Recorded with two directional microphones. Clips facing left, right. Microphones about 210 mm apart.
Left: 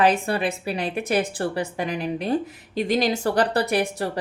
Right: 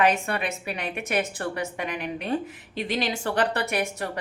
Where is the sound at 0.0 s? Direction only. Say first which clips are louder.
Left 3 dB; 35° left (ahead or behind).